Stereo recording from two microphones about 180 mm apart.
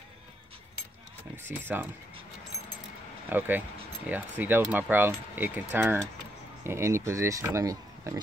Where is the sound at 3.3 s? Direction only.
10° right (ahead or behind).